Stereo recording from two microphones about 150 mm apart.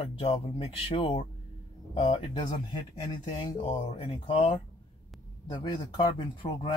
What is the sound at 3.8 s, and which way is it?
Speech, 45° left (ahead or behind).